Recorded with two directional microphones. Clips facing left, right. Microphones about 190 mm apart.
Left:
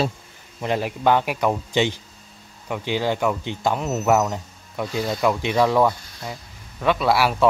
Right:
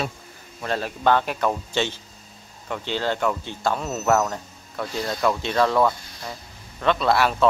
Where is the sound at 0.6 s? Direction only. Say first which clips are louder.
Left 2 dB; 15° left (ahead or behind).